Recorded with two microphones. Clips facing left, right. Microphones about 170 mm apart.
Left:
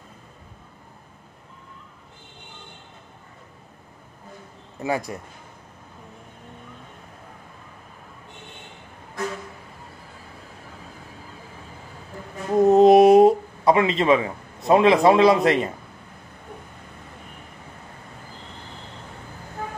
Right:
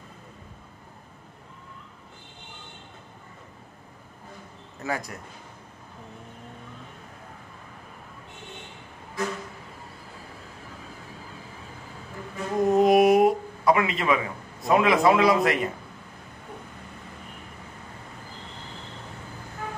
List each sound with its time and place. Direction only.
4.8 s a man's voice: 20° left (ahead or behind)
12.6 s a sound: 25° left (ahead or behind)
14.7 s a man's voice: 30° left (ahead or behind)